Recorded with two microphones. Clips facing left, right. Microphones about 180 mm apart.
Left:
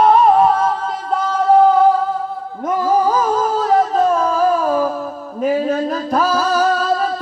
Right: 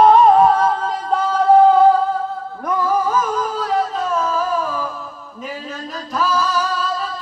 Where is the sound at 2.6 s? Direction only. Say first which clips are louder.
Left 2 dB; 25° left (ahead or behind).